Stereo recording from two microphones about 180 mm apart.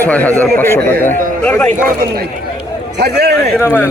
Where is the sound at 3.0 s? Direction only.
65° right (ahead or behind).